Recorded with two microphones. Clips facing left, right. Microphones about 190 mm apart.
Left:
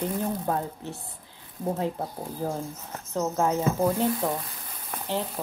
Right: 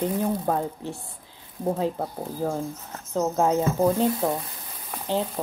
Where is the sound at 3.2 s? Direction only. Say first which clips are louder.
Right 3 dB; 20° right (ahead or behind).